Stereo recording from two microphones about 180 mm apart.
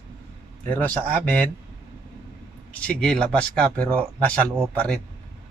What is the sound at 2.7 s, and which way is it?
Speech, 5° left (ahead or behind).